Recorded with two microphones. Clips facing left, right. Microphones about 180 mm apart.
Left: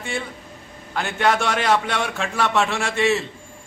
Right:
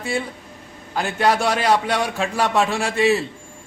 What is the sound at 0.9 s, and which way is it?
A man's voice, 35° right (ahead or behind).